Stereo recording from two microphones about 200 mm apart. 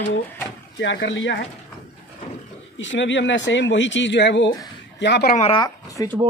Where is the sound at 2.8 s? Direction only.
65° left (ahead or behind).